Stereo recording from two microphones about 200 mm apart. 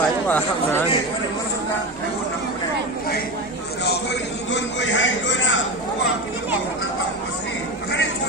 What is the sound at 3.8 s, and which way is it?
A man's voice, 55° left (ahead or behind).